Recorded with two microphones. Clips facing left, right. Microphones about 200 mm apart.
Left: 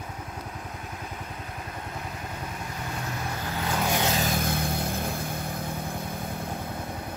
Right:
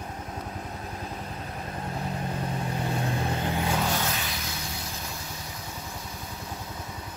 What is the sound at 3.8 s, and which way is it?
Vehicle, 15° left (ahead or behind).